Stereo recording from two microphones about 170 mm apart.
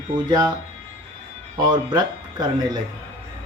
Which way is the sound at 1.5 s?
25° right (ahead or behind).